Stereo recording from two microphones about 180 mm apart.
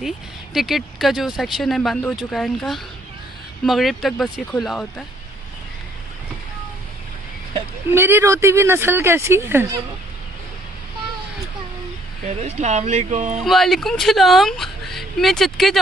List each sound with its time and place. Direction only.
0.0 s speech: centre (ahead or behind)
7.9 s speech: 10° right (ahead or behind)
12.4 s speech: 40° right (ahead or behind)
13.4 s speech: centre (ahead or behind)